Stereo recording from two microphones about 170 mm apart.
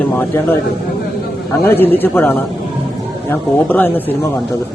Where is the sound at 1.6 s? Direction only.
10° left (ahead or behind).